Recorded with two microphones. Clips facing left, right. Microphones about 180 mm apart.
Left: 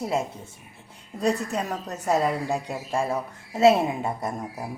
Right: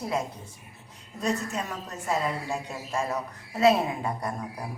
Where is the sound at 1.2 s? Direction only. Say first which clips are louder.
Left 4 dB; 35° left (ahead or behind).